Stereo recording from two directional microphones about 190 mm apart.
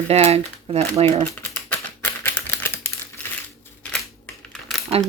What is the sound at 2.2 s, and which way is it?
Typewriter, 10° left (ahead or behind).